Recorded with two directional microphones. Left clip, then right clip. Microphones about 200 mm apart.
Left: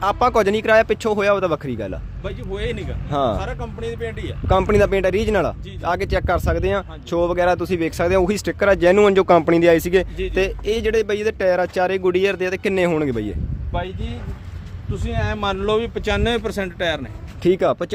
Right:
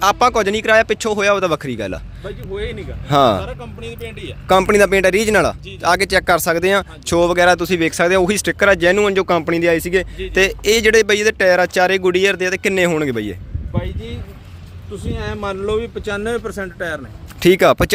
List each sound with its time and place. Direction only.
0.0 s speech: 10° right (ahead or behind)
3.1 s speech: 20° right (ahead or behind)
3.4 s speech: 30° left (ahead or behind)
4.4 s speech: 10° right (ahead or behind); by 10.1 s 10° left (ahead or behind)
10.3 s speech: 10° right (ahead or behind)
15.2 s speech: 20° left (ahead or behind)
16.0 s speech: 35° left (ahead or behind)
17.4 s speech: 10° right (ahead or behind)